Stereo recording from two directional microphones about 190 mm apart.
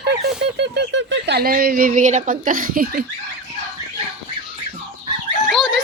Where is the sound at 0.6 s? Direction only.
65° right (ahead or behind); by 3.0 s 50° right (ahead or behind).